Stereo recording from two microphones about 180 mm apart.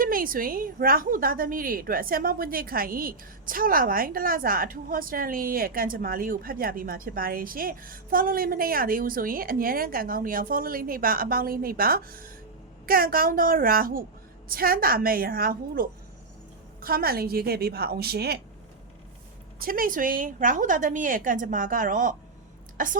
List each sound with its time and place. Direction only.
0.0 s a woman's voice: 50° right (ahead or behind)
19.5 s a woman's voice: 55° right (ahead or behind)